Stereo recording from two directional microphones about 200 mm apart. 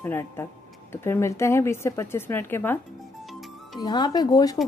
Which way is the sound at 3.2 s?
Centre (ahead or behind).